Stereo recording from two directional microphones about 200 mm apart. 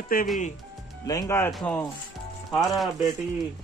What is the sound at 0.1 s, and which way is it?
Speech, 45° left (ahead or behind).